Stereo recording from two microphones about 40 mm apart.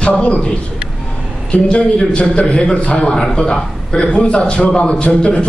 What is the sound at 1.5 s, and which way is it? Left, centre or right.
A man's voice, left.